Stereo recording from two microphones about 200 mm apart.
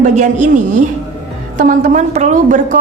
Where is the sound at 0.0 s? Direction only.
35° right (ahead or behind).